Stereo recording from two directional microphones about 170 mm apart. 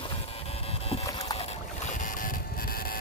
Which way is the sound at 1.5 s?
45° left (ahead or behind).